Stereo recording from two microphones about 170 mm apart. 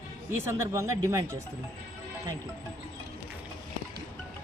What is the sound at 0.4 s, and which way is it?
Speech, 15° right (ahead or behind).